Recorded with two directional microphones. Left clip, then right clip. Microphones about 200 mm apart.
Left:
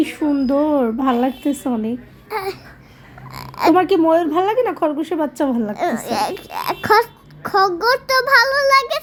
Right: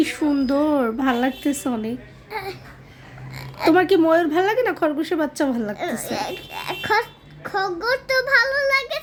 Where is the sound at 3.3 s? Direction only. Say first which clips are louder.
Left 4 dB; 40° left (ahead or behind).